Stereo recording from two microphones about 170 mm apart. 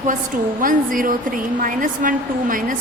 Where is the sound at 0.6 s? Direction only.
55° right (ahead or behind).